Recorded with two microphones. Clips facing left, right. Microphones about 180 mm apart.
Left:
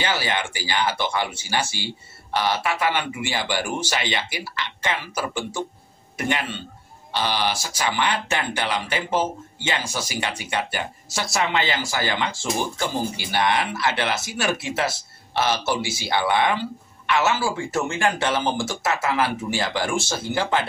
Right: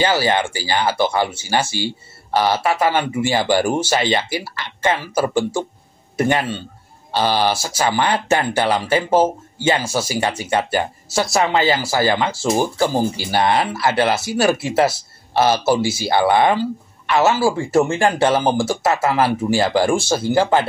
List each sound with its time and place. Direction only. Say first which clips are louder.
0.0 s speech: right 8 dB; 40° right (ahead or behind)
2.3 s speech: right 6 dB; 40° right (ahead or behind)